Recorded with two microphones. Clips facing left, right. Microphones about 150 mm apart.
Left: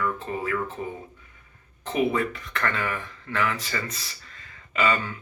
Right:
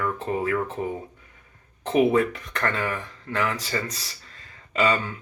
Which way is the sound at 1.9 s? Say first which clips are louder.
Right 5 dB; 40° right (ahead or behind).